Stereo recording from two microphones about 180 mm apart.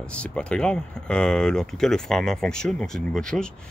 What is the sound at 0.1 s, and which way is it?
Speech, 5° left (ahead or behind).